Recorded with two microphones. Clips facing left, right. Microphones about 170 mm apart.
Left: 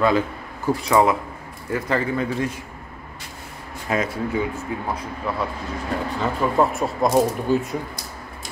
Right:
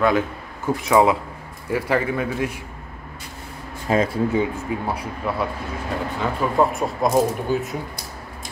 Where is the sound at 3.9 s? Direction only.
30° right (ahead or behind).